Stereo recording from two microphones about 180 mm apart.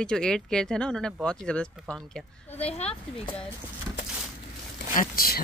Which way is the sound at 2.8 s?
35° left (ahead or behind).